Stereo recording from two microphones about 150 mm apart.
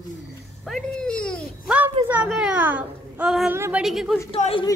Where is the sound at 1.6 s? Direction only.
10° right (ahead or behind).